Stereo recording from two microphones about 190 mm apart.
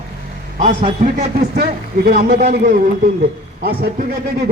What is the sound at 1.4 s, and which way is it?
A man's voice, 55° right (ahead or behind).